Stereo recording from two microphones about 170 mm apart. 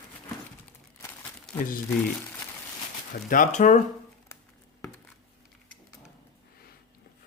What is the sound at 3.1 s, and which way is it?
Speech, 50° left (ahead or behind).